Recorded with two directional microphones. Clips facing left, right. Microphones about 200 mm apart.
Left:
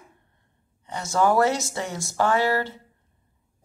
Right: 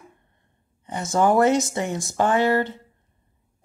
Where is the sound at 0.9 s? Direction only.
20° right (ahead or behind).